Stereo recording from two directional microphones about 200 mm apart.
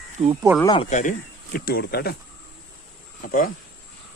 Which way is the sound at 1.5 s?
50° left (ahead or behind).